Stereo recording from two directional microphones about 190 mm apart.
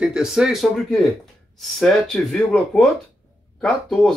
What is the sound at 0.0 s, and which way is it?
Speech, 5° right (ahead or behind).